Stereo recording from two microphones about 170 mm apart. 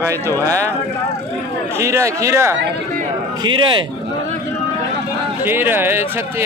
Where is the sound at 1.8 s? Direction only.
15° right (ahead or behind).